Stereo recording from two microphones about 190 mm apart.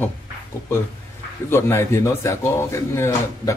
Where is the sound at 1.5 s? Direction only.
15° left (ahead or behind).